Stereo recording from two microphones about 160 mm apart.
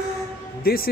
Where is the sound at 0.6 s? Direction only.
65° left (ahead or behind).